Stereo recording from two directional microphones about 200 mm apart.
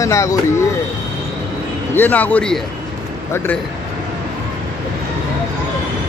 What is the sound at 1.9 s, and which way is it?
Speech, 10° left (ahead or behind).